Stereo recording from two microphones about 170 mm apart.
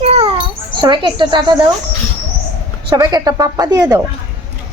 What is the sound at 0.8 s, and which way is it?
Speech, 25° right (ahead or behind).